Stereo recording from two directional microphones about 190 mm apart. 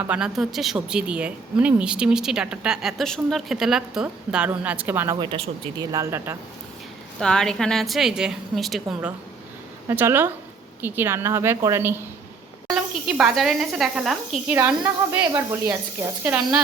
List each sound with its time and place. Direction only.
0.0 s speech: 5° right (ahead or behind)
5.1 s speech: 20° right (ahead or behind)
7.2 s speech: 5° left (ahead or behind)
15.3 s speech: 20° right (ahead or behind)